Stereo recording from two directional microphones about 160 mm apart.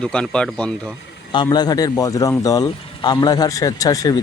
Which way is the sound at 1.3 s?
25° left (ahead or behind).